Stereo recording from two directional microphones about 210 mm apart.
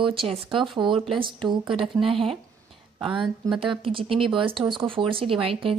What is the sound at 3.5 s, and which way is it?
Speech, 25° right (ahead or behind).